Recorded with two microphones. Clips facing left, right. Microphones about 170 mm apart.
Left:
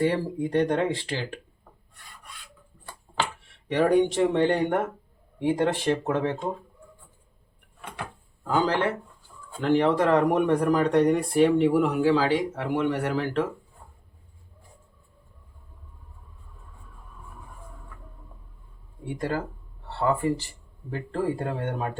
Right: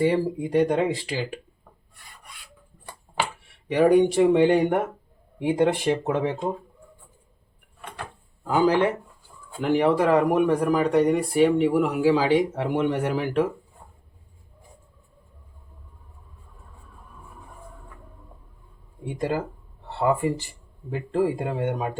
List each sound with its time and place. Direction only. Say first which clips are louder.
0.0 s speech: right 3 dB; 15° right (ahead or behind)
3.7 s speech: right 3 dB; 10° right (ahead or behind)
8.4 s speech: right 4 dB; 10° right (ahead or behind)
19.0 s speech: right 2 dB; 15° right (ahead or behind)